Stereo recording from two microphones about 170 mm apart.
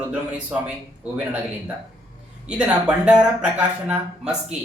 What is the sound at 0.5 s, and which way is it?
Speech, 5° right (ahead or behind).